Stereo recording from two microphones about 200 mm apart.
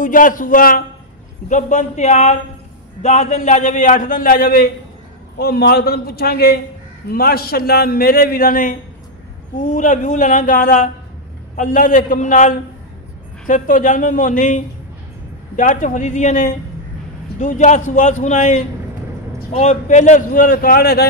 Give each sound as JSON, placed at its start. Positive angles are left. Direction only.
{"t": 0.0, "sound": "a man's voice", "side_deg": 40}